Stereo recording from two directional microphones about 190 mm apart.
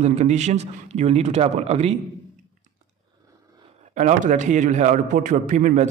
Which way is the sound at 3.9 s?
40° right (ahead or behind).